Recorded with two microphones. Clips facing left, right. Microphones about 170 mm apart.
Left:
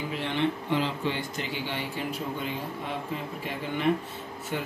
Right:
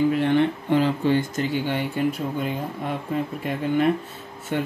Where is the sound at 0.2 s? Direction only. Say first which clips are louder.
Right 8 dB; 50° right (ahead or behind).